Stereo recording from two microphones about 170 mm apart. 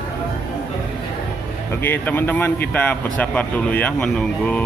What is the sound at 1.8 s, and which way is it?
Speech, 10° left (ahead or behind).